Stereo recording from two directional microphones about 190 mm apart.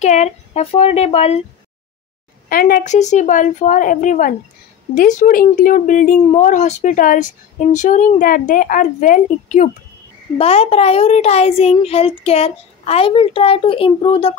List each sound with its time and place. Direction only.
0.0 s a child's voice: 40° left (ahead or behind)
2.5 s speech: 50° left (ahead or behind)
10.3 s a child's voice: 30° left (ahead or behind)